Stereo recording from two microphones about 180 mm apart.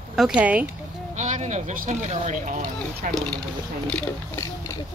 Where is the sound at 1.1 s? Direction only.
40° right (ahead or behind).